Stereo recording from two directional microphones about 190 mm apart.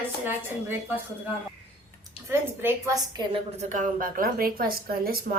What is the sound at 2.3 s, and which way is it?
Speech, 15° right (ahead or behind).